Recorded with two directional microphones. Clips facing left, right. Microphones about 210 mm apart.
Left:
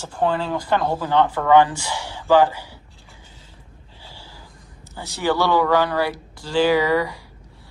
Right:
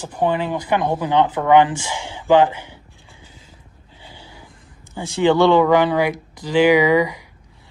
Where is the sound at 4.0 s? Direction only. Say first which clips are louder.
Right 2 dB; 20° right (ahead or behind).